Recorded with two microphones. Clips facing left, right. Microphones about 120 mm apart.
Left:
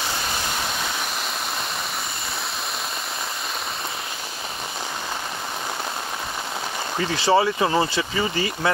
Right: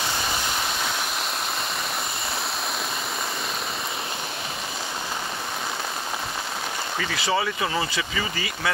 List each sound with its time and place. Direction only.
7.0 s speech: 30° left (ahead or behind)